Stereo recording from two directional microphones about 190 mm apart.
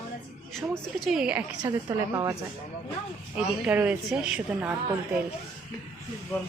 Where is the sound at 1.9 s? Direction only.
15° right (ahead or behind).